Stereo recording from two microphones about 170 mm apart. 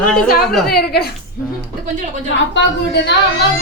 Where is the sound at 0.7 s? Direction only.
65° left (ahead or behind).